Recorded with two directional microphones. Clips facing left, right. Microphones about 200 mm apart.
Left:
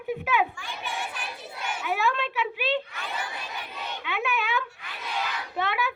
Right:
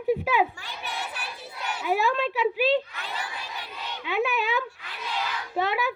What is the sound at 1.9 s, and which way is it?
Speech, 35° right (ahead or behind).